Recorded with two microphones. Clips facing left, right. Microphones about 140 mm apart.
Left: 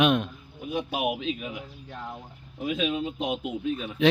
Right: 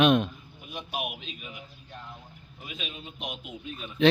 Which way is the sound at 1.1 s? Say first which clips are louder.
Left 11 dB; 90° left.